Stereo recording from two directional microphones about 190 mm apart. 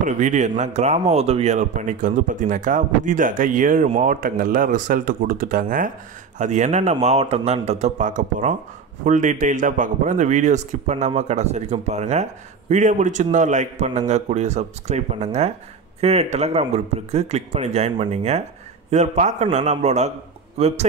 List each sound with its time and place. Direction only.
0.0 s speech: 40° right (ahead or behind)